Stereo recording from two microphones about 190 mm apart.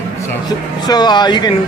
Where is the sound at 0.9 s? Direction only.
20° left (ahead or behind).